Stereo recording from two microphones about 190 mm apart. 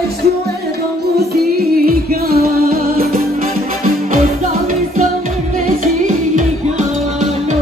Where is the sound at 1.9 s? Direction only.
50° right (ahead or behind).